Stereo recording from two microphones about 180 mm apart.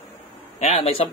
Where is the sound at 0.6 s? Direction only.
35° left (ahead or behind).